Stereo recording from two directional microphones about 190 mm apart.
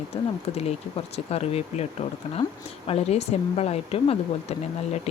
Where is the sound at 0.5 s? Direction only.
35° left (ahead or behind).